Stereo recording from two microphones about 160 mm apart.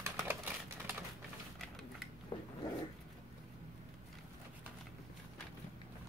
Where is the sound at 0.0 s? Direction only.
15° right (ahead or behind).